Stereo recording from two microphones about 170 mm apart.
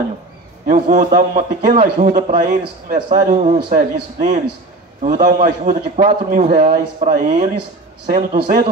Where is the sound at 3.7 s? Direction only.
50° right (ahead or behind).